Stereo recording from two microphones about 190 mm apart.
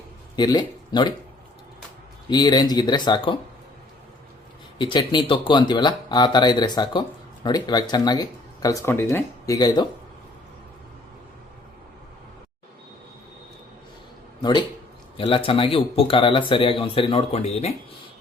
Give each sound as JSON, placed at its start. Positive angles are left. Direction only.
{"t": 0.3, "sound": "speech", "side_deg": 20}
{"t": 2.3, "sound": "speech", "side_deg": 20}
{"t": 4.8, "sound": "speech", "side_deg": 25}
{"t": 15.2, "sound": "speech", "side_deg": 30}